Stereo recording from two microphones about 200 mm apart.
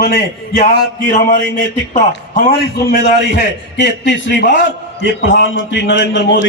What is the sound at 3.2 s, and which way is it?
A man's voice, 60° left (ahead or behind).